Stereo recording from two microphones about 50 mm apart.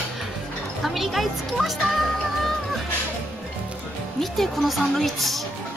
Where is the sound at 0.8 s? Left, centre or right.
Centre.